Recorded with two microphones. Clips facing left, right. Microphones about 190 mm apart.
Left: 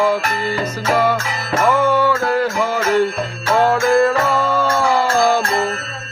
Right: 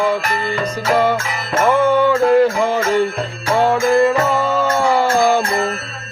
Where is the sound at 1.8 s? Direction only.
10° left (ahead or behind).